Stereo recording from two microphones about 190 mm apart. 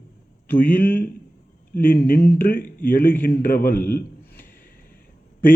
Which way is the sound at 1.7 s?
45° left (ahead or behind).